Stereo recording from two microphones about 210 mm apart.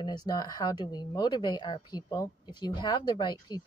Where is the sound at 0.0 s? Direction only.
20° left (ahead or behind).